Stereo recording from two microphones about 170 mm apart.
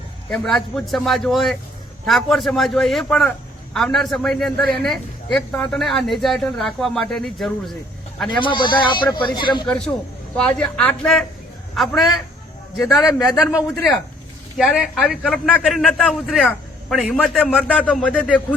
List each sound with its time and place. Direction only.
0.3 s a man's voice: 5° left (ahead or behind)
8.3 s speech: 30° left (ahead or behind)
9.6 s a man's voice: 5° left (ahead or behind)
14.6 s a man's voice: centre (ahead or behind)